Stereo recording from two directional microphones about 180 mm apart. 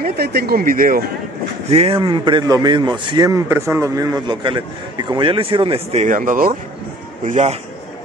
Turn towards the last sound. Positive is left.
turn(degrees=-40)  # may be behind; listen again after turning